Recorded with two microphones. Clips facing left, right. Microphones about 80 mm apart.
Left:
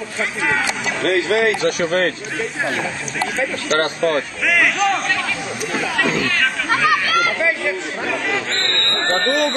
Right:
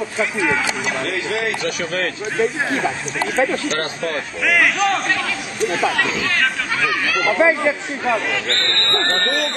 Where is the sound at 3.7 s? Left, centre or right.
Left.